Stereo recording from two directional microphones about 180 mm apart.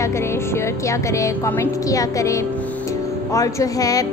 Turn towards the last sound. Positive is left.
turn(degrees=20)  # may be behind; listen again after turning